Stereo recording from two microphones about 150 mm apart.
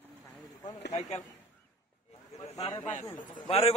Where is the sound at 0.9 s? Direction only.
50° left (ahead or behind).